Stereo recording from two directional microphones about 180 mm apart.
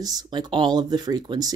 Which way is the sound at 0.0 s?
20° right (ahead or behind).